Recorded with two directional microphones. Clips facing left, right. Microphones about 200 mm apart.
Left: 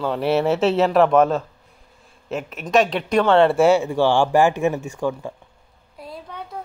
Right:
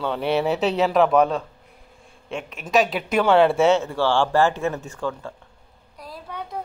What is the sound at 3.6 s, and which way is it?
Speech, 10° left (ahead or behind).